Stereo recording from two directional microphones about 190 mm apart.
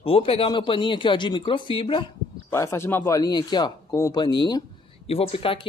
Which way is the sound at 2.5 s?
15° left (ahead or behind).